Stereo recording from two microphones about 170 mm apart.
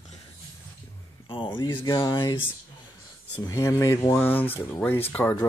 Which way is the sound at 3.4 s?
20° left (ahead or behind).